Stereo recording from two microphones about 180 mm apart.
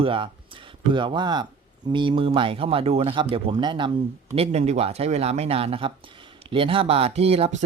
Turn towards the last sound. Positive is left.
turn(degrees=-35)  # may be behind; listen again after turning